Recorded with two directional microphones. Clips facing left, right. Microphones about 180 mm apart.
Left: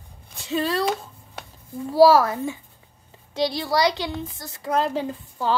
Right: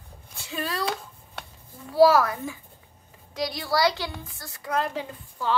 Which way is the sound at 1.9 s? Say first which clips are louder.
Left 3 dB; 30° left (ahead or behind).